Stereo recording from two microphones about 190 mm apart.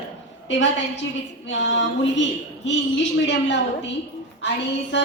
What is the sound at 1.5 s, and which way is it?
Speech, 70° left (ahead or behind).